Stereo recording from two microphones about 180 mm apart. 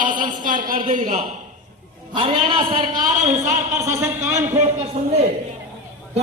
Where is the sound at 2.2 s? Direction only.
25° right (ahead or behind).